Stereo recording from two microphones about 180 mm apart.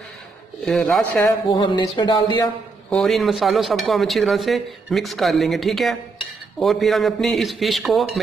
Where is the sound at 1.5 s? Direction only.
25° left (ahead or behind).